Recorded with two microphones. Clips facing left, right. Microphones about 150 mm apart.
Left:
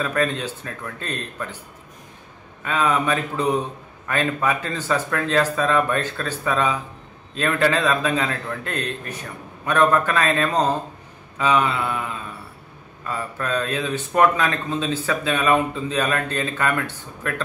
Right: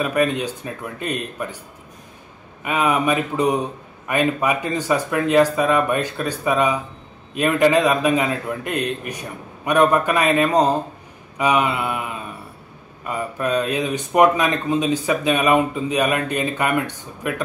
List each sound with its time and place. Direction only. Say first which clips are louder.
0.0 s speech: right 3 dB; 15° right (ahead or behind)
2.6 s speech: right 2 dB; 15° right (ahead or behind)